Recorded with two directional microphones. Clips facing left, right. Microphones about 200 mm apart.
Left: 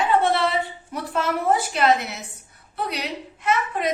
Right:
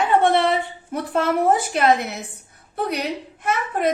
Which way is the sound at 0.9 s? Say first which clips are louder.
Right 6 dB; 55° right (ahead or behind).